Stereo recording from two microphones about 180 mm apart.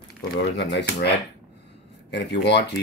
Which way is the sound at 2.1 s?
70° left (ahead or behind).